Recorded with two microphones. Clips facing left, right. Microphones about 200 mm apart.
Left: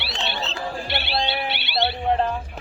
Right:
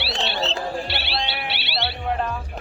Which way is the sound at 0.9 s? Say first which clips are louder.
Left 3 dB; 50° left (ahead or behind).